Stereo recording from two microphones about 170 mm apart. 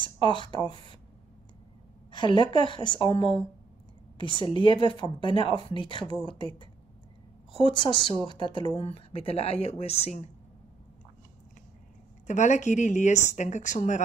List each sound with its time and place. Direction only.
0.0 s speech: 30° left (ahead or behind)
2.0 s speech: 30° left (ahead or behind)
7.7 s speech: 30° left (ahead or behind)
12.3 s a woman's voice: 45° left (ahead or behind)